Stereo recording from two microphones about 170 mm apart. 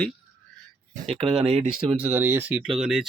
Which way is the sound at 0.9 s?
40° right (ahead or behind).